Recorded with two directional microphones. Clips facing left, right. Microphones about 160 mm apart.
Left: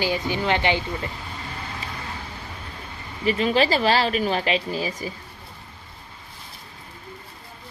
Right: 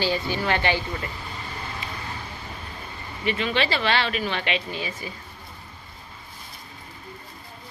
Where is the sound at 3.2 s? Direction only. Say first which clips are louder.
Left 5 dB; 40° left (ahead or behind).